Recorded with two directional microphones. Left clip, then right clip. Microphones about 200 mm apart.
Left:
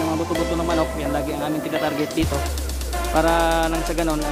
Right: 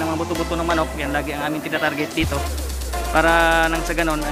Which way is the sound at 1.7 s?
5° right (ahead or behind).